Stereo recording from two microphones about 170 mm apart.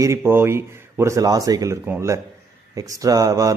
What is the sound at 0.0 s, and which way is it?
Speech, 15° right (ahead or behind).